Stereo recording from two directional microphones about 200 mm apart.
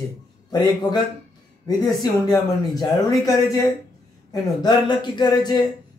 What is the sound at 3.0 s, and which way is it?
Speech, 15° left (ahead or behind).